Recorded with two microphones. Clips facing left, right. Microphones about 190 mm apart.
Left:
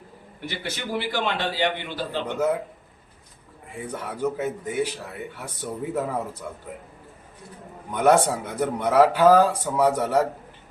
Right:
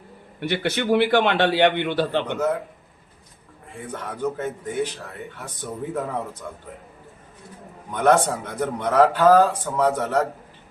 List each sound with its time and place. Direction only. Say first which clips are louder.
0.3 s a man's voice: right 9 dB; 65° right (ahead or behind)
2.2 s a man's voice: even; 10° left (ahead or behind)
3.9 s a man's voice: even; 10° left (ahead or behind)
7.9 s a man's voice: even; 10° left (ahead or behind)